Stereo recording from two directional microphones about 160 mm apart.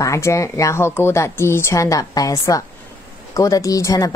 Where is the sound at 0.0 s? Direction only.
20° left (ahead or behind).